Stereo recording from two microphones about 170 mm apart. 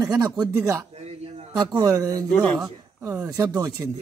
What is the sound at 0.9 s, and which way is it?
Mantra, 35° right (ahead or behind).